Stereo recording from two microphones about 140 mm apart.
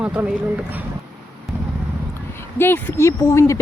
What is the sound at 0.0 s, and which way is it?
Speech, 10° right (ahead or behind).